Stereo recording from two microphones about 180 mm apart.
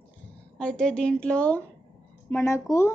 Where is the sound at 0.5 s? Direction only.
5° left (ahead or behind).